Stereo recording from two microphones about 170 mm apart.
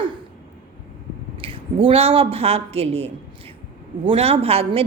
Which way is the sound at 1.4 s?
30° right (ahead or behind).